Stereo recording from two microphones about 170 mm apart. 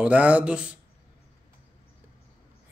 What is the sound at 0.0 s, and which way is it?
Speech, 10° right (ahead or behind).